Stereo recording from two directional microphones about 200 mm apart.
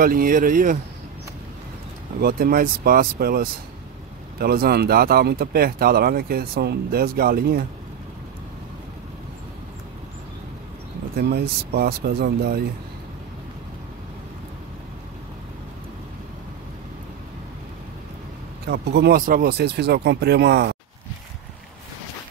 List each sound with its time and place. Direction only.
0.0 s speech: 45° right (ahead or behind)
2.2 s speech: 45° right (ahead or behind)
11.1 s speech: 55° right (ahead or behind)
18.7 s speech: 55° right (ahead or behind)